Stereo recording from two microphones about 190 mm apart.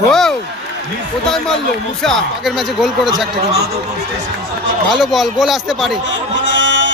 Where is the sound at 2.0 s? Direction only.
Centre (ahead or behind).